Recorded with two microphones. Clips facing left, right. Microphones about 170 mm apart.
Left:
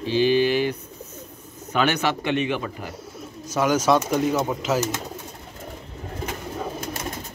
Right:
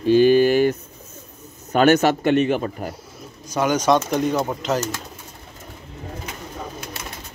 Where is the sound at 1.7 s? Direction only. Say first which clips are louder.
Right 7 dB; 45° right (ahead or behind).